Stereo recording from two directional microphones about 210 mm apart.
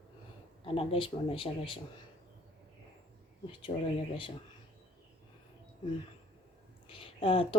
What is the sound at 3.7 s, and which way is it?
Speech, 25° left (ahead or behind).